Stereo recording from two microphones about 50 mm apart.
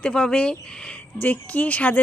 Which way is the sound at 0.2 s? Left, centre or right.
Left.